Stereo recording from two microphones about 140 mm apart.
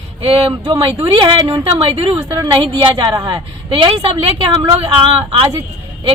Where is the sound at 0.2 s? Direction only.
45° right (ahead or behind).